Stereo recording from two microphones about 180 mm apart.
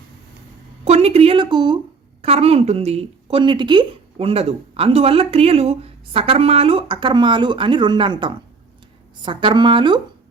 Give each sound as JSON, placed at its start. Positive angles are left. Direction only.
{"t": 0.9, "sound": "a woman's voice", "side_deg": -35}